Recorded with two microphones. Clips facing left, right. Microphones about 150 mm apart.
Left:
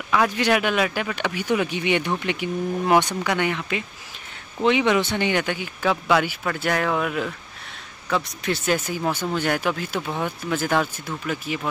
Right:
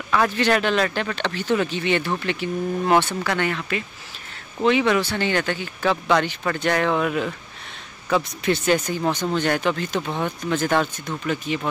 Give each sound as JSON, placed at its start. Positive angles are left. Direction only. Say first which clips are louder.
{"t": 0.1, "sound": "speech", "louder": "even", "side_deg": 10}